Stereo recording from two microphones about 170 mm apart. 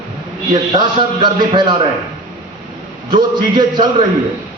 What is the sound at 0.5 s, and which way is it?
A man's voice, 25° right (ahead or behind).